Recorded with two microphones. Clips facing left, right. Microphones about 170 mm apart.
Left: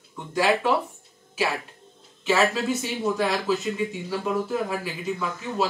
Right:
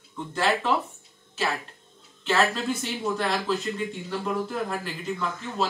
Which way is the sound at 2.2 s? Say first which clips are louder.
Left 2 dB; 5° left (ahead or behind).